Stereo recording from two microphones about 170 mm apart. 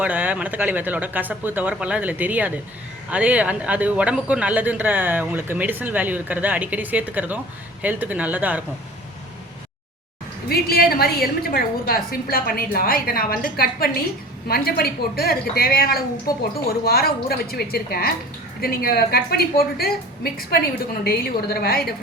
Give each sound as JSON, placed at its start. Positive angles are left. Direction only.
{"t": 0.0, "sound": "speech", "side_deg": -10}
{"t": 10.5, "sound": "a woman's voice", "side_deg": 65}